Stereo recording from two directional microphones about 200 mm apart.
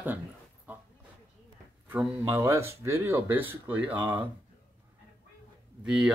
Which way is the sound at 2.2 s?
15° right (ahead or behind).